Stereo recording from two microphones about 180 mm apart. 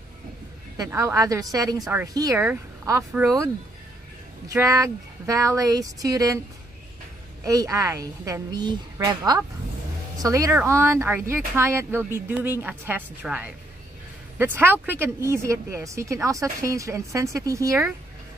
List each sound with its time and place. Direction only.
0.7 s speech: 15° right (ahead or behind)
4.5 s speech: 20° right (ahead or behind)
7.4 s speech: 20° right (ahead or behind)